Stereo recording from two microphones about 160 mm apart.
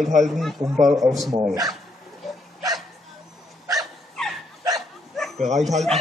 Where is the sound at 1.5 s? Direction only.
25° right (ahead or behind).